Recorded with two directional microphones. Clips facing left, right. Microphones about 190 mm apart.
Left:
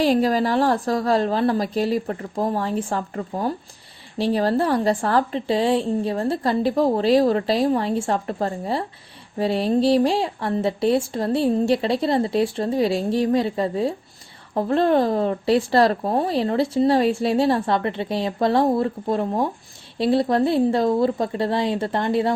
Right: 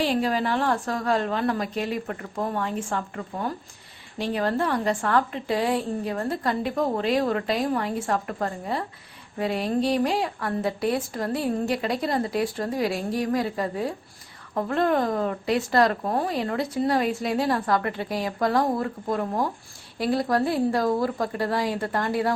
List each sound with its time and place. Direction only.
0.0 s a woman's voice: 40° left (ahead or behind); by 22.3 s 25° left (ahead or behind)